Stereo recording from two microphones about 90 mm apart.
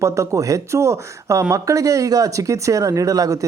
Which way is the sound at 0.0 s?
35° right (ahead or behind).